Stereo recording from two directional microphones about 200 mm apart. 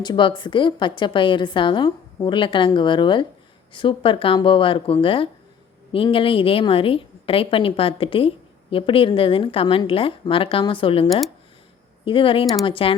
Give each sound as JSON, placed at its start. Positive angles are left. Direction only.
{"t": 0.0, "sound": "a woman's voice", "side_deg": 25}